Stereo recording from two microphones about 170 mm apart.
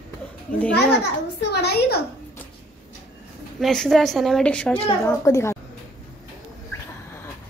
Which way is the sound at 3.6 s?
Centre (ahead or behind).